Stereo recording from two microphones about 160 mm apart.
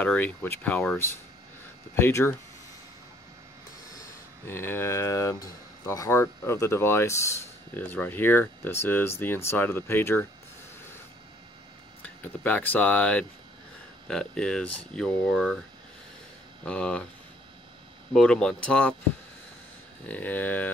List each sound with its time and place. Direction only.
0.0 s speech: 10° left (ahead or behind)
3.8 s speech: 20° left (ahead or behind)
12.0 s speech: 10° left (ahead or behind)
16.6 s speech: 10° left (ahead or behind)
18.1 s speech: 5° left (ahead or behind)
20.1 s speech: 10° left (ahead or behind)